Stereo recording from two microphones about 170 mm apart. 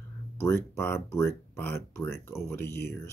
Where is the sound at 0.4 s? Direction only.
15° left (ahead or behind).